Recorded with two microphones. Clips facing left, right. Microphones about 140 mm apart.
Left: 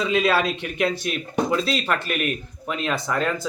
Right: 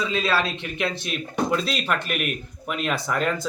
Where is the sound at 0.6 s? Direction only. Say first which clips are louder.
Left 4 dB; 45° left (ahead or behind).